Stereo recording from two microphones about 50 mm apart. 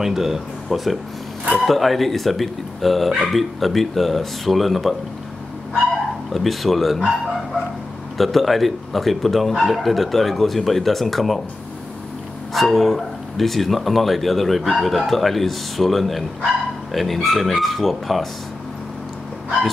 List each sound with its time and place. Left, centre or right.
0.0 s speech: centre
6.3 s speech: centre
8.2 s speech: centre
12.5 s speech: centre